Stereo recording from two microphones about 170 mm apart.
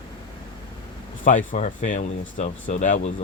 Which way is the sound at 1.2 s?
50° left (ahead or behind).